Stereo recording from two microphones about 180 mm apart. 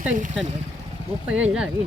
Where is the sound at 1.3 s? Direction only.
5° right (ahead or behind).